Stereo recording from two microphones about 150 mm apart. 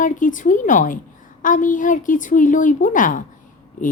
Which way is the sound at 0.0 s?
60° left (ahead or behind).